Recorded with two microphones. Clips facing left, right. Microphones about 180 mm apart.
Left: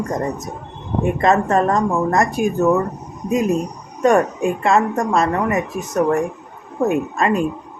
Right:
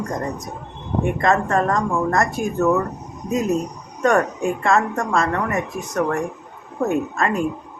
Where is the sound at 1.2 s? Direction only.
20° left (ahead or behind).